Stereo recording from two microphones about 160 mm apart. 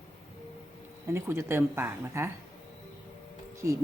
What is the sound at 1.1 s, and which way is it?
Speech, 15° right (ahead or behind).